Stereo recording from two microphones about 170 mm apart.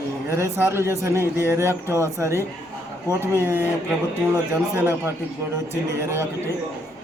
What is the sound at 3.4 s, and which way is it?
Speech, 15° left (ahead or behind).